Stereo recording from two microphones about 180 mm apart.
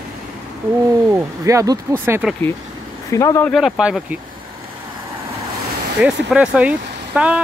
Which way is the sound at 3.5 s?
Centre (ahead or behind).